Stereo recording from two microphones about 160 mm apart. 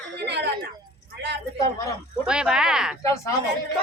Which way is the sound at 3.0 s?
20° left (ahead or behind).